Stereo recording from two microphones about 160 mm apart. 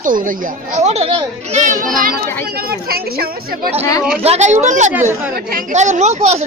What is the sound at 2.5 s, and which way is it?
Speech, 75° right (ahead or behind).